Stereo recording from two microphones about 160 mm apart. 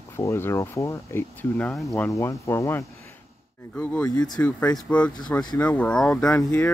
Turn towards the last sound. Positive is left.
turn(degrees=10)  # may be behind; listen again after turning